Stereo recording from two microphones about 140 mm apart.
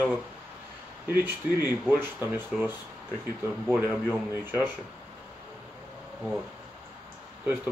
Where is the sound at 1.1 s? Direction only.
15° right (ahead or behind).